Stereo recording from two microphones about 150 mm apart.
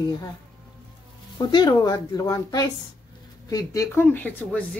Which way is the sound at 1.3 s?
30° left (ahead or behind).